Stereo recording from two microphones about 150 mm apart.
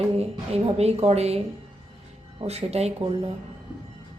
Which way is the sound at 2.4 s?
45° right (ahead or behind).